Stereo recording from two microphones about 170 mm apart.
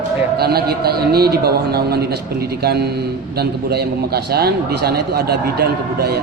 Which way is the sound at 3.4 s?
70° right (ahead or behind).